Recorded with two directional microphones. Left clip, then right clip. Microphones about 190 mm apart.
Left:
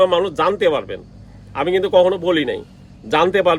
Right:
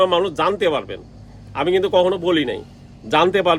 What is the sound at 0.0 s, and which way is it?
Speech, 10° right (ahead or behind).